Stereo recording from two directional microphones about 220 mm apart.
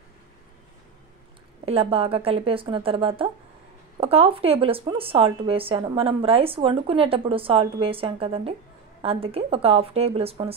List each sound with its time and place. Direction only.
1.7 s speech: 25° right (ahead or behind)